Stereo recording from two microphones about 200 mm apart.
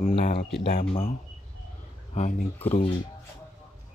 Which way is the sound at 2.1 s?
35° left (ahead or behind).